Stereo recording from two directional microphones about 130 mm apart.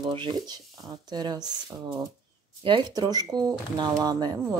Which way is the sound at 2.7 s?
35° right (ahead or behind).